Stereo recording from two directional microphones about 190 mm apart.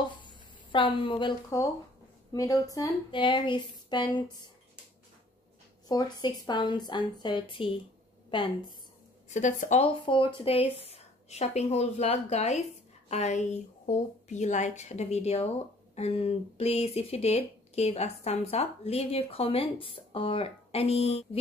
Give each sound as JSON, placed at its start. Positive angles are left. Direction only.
{"t": 0.7, "sound": "speech", "side_deg": 25}
{"t": 1.5, "sound": "speech", "side_deg": 15}
{"t": 5.9, "sound": "speech", "side_deg": 20}
{"t": 9.3, "sound": "speech", "side_deg": 40}
{"t": 10.0, "sound": "speech", "side_deg": 25}